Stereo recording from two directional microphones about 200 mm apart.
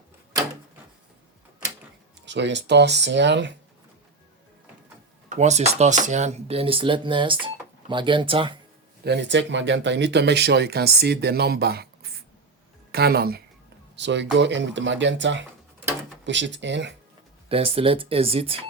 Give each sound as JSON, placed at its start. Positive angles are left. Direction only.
{"t": 2.2, "sound": "speech", "side_deg": -65}
{"t": 5.3, "sound": "speech", "side_deg": -35}
{"t": 9.0, "sound": "speech", "side_deg": -60}
{"t": 13.9, "sound": "speech", "side_deg": -60}
{"t": 17.5, "sound": "speech", "side_deg": -30}